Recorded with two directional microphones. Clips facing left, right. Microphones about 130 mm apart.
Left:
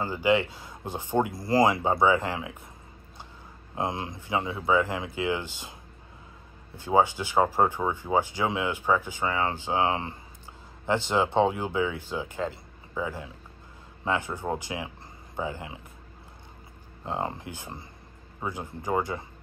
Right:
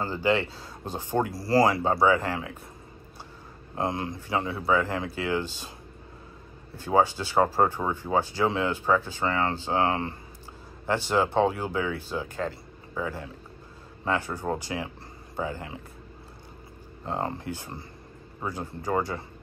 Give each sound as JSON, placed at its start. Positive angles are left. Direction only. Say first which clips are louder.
{"t": 0.0, "sound": "speech", "louder": "left 1 dB", "side_deg": 15}
{"t": 3.7, "sound": "speech", "louder": "right 2 dB", "side_deg": 20}
{"t": 17.0, "sound": "speech", "louder": "right 1 dB", "side_deg": 15}